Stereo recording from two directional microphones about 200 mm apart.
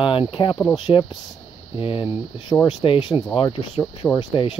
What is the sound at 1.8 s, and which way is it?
Speech, 25° left (ahead or behind).